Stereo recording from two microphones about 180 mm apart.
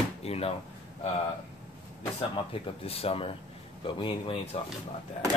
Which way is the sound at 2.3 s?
30° left (ahead or behind).